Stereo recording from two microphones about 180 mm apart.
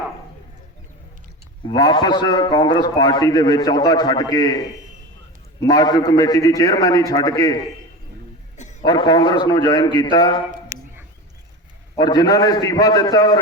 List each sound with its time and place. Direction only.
1.6 s a man's voice: 25° left (ahead or behind)
5.6 s a man's voice: 20° left (ahead or behind)
8.8 s a man's voice: 20° left (ahead or behind)
10.7 s a sound: 20° right (ahead or behind)
11.9 s a man's voice: 25° left (ahead or behind)